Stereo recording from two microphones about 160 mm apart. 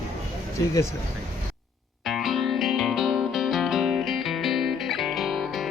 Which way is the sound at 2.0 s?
Centre (ahead or behind).